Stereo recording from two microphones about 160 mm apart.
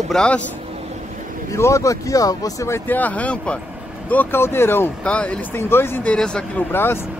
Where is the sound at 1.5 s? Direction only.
20° left (ahead or behind).